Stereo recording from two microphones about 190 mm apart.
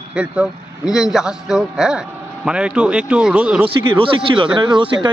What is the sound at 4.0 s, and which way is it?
Speech, 25° right (ahead or behind).